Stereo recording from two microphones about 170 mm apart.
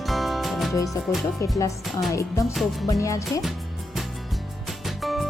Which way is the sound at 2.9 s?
20° left (ahead or behind).